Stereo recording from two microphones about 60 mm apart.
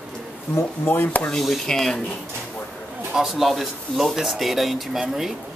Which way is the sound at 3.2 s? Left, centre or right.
Centre.